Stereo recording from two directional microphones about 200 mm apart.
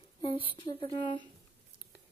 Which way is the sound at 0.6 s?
25° left (ahead or behind).